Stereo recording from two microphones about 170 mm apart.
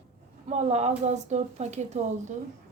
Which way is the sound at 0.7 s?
40° right (ahead or behind).